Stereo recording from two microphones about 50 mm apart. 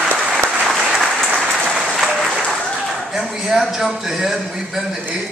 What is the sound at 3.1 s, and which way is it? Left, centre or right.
A man's voice, centre.